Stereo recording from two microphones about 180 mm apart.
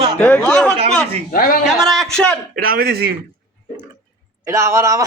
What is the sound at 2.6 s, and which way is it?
Speech, 55° right (ahead or behind).